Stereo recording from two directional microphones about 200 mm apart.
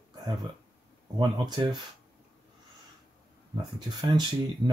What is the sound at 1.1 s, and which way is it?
Speech, 20° right (ahead or behind).